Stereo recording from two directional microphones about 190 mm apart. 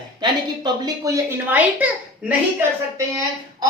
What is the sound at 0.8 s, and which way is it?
A woman's voice, 15° right (ahead or behind).